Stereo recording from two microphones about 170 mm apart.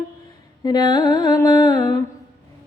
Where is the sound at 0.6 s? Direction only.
25° left (ahead or behind).